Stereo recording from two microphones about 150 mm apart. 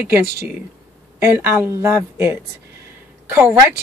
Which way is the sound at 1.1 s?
15° right (ahead or behind).